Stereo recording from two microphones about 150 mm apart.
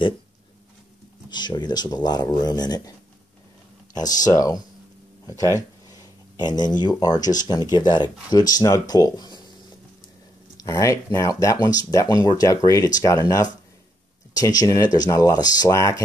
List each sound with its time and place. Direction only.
1.3 s speech: 30° left (ahead or behind)
3.9 s speech: 25° left (ahead or behind)
10.6 s speech: 25° left (ahead or behind)